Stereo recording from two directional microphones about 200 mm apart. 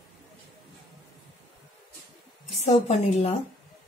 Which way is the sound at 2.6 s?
35° left (ahead or behind).